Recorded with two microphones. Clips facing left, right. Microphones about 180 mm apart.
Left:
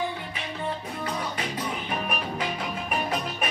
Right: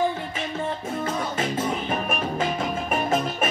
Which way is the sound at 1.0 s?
45° right (ahead or behind).